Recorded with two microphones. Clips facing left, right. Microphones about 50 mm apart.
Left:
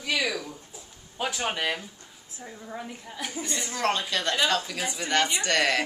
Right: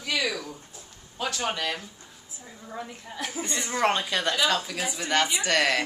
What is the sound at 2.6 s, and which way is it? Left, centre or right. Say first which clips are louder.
Speech: right 2 dB; centre.